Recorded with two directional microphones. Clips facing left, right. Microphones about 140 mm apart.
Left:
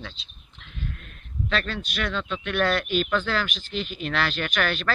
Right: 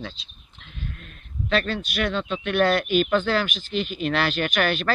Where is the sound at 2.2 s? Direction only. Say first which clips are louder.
Right 3 dB; 20° right (ahead or behind).